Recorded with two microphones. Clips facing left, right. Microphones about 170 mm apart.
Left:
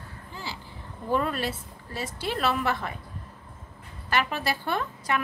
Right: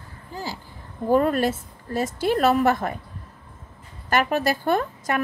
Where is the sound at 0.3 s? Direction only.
40° right (ahead or behind).